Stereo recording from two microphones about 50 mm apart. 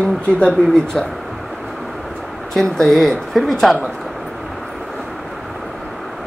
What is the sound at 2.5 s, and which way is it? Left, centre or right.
Speech, centre.